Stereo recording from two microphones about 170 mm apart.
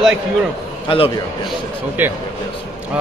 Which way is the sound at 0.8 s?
30° left (ahead or behind).